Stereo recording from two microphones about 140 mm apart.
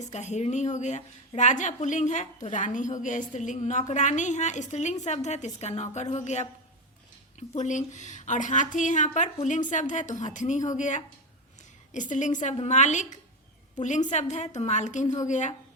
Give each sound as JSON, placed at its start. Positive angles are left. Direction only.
{"t": 0.0, "sound": "a woman's voice", "side_deg": 55}